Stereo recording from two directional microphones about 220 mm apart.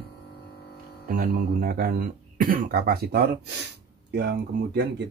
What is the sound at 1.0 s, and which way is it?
Speech, 40° right (ahead or behind).